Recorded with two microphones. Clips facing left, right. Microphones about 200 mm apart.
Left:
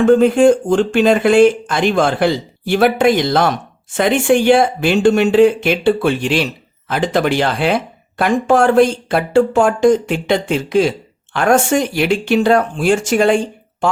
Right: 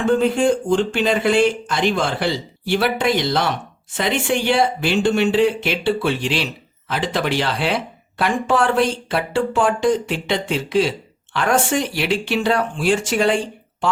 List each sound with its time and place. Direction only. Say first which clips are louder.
0.0 s speech: left 7 dB; 50° left (ahead or behind)